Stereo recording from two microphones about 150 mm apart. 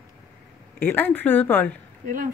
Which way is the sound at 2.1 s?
65° right (ahead or behind).